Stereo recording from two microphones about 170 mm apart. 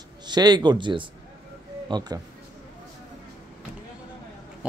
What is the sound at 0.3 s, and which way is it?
Speech, 25° right (ahead or behind).